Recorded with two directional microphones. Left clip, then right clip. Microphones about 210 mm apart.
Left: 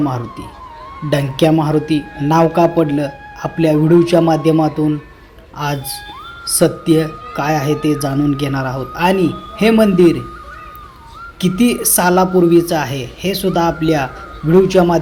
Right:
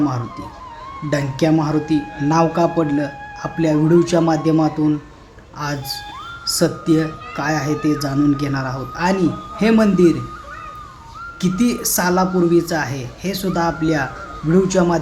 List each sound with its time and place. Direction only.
0.0 s speech: 10° left (ahead or behind)
11.3 s speech: 10° left (ahead or behind)